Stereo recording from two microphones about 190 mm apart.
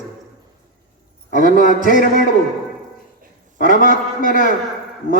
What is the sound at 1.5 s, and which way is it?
Speech, 45° left (ahead or behind).